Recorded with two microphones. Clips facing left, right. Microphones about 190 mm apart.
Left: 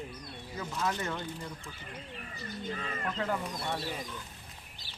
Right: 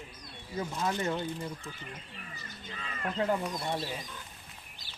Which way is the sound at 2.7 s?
45° left (ahead or behind).